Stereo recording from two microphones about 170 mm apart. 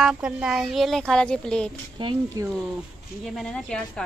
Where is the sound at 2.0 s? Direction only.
30° right (ahead or behind).